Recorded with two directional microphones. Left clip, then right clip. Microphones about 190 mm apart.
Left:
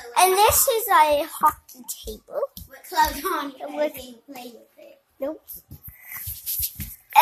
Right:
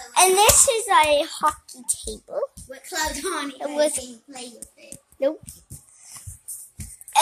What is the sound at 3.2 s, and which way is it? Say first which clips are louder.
Speech: left 2 dB; 15° right (ahead or behind).